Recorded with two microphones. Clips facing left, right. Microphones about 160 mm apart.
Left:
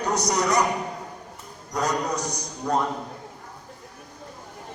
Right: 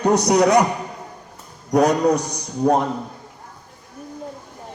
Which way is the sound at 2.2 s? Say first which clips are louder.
Right 1 dB; 30° right (ahead or behind).